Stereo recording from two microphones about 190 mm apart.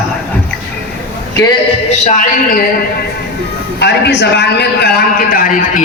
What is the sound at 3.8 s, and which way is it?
A man's voice, 60° left (ahead or behind).